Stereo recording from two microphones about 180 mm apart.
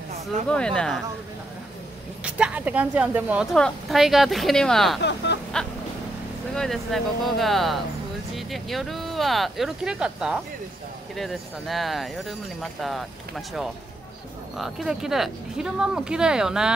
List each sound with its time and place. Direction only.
0.5 s speech: 5° left (ahead or behind)
2.2 s speech: 5° right (ahead or behind)
5.0 s speech: 70° left (ahead or behind)
6.5 s speech: centre (ahead or behind)
14.6 s speech: centre (ahead or behind)